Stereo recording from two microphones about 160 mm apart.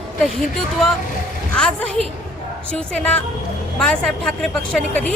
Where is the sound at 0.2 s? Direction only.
Centre (ahead or behind).